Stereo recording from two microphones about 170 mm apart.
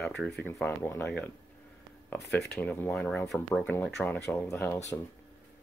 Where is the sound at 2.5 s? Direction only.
10° left (ahead or behind).